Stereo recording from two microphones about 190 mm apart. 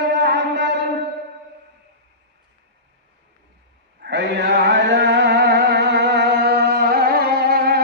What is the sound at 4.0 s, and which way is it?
Music, 65° right (ahead or behind).